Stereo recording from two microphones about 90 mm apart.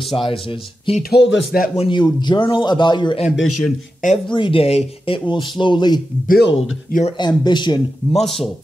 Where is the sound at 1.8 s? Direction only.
60° left (ahead or behind).